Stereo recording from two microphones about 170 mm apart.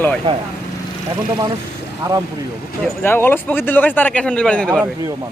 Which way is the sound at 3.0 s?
10° left (ahead or behind).